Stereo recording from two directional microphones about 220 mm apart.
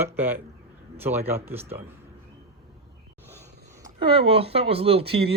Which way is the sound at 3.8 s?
25° right (ahead or behind).